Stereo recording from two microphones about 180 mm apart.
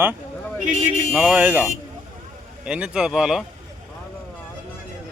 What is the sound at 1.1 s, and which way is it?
Speech, 10° right (ahead or behind).